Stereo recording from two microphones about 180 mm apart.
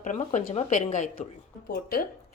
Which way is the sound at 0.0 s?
45° left (ahead or behind).